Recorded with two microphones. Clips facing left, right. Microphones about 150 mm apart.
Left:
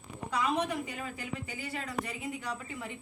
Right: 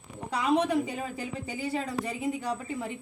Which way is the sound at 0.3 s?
30° right (ahead or behind).